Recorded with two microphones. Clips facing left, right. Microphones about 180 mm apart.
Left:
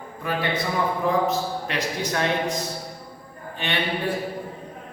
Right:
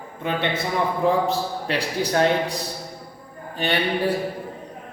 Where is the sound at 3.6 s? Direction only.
35° right (ahead or behind).